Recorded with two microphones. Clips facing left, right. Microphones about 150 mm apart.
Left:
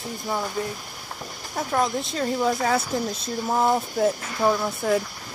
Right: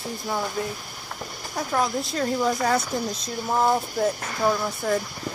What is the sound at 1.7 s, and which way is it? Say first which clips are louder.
Speech: left 1 dB; 5° left (ahead or behind).